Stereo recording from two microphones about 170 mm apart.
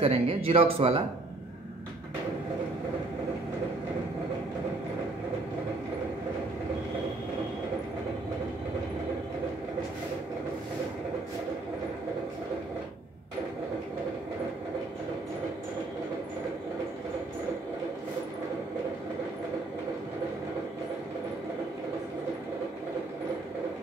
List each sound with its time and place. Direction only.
0.0 s speech: 35° right (ahead or behind)